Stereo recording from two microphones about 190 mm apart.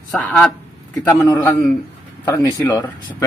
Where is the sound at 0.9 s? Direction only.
15° left (ahead or behind).